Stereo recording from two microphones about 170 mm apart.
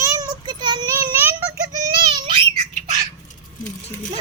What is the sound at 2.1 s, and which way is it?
Squawk, 30° right (ahead or behind).